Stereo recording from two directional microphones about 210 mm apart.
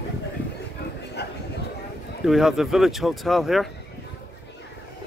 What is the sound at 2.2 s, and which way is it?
Speech, centre (ahead or behind).